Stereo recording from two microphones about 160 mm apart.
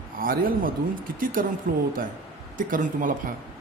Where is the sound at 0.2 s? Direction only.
60° right (ahead or behind).